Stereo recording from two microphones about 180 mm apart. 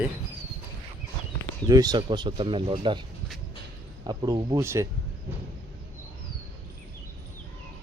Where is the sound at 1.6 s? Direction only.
20° right (ahead or behind).